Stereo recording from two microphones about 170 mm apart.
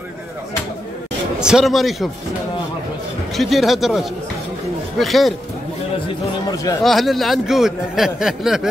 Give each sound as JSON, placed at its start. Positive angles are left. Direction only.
{"t": 1.4, "sound": "speech", "side_deg": -5}
{"t": 3.3, "sound": "speech", "side_deg": 0}
{"t": 6.8, "sound": "speech", "side_deg": 0}